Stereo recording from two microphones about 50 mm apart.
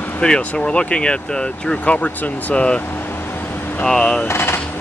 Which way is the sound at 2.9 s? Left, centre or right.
Left.